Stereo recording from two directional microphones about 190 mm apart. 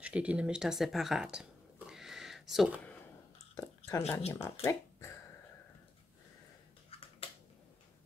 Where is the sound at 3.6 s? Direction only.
15° left (ahead or behind).